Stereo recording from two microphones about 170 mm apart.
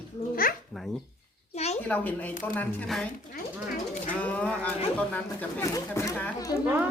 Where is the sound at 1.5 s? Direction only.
40° left (ahead or behind).